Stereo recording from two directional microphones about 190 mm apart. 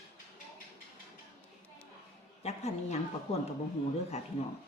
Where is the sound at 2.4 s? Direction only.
35° left (ahead or behind).